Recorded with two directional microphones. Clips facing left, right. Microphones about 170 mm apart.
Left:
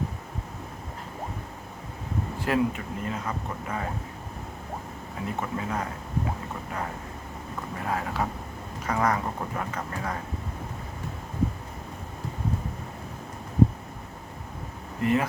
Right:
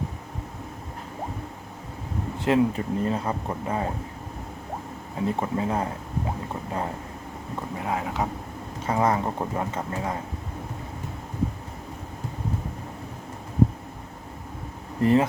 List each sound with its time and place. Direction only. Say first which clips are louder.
2.4 s speech: right 4 dB; 30° right (ahead or behind)
5.4 s speech: right 2 dB; 30° right (ahead or behind)
7.8 s speech: right 1 dB; 20° right (ahead or behind)
15.0 s speech: right 4 dB; 35° right (ahead or behind)